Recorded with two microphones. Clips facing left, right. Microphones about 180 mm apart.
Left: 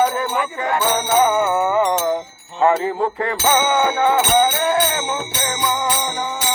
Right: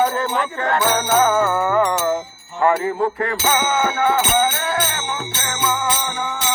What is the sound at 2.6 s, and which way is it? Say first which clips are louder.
Music: left 1 dB; 20° left (ahead or behind).